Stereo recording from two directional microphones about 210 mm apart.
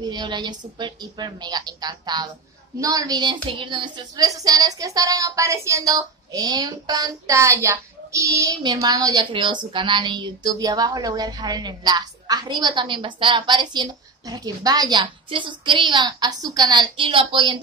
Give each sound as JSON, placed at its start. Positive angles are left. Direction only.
{"t": 0.0, "sound": "a woman's voice", "side_deg": -20}